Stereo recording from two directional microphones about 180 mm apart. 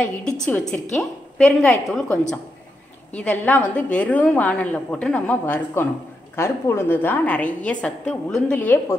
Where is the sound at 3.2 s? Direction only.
10° left (ahead or behind).